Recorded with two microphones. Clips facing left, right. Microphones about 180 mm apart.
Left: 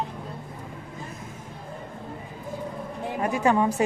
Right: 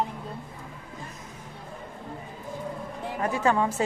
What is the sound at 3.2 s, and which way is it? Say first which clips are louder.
Speech: left 2 dB; 15° left (ahead or behind).